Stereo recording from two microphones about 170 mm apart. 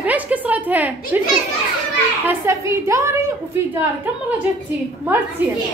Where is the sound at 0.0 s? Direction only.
10° right (ahead or behind).